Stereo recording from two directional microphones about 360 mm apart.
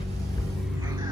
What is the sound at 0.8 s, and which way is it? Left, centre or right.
Music, centre.